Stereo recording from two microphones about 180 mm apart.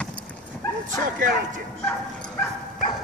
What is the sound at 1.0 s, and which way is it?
Speech, 45° right (ahead or behind).